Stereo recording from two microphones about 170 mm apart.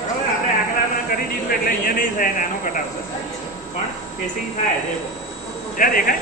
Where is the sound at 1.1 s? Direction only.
60° left (ahead or behind).